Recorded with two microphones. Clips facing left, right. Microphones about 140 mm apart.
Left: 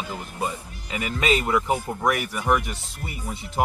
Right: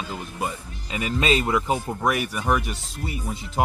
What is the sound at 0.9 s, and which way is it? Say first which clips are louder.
Speech: right 1 dB; 25° right (ahead or behind).